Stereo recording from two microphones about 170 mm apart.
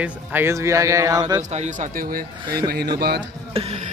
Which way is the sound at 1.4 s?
40° right (ahead or behind).